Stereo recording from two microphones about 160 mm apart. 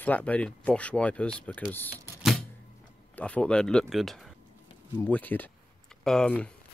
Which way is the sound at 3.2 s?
10° left (ahead or behind).